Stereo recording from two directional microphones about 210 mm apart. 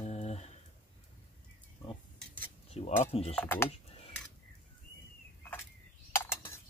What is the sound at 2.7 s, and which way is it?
Speech, 30° left (ahead or behind).